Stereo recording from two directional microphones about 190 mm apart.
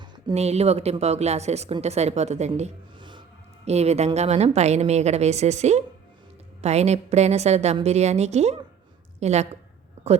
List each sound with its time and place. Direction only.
0.3 s a woman's voice: 35° right (ahead or behind)
3.0 s music: 25° right (ahead or behind)
3.7 s a woman's voice: 35° right (ahead or behind)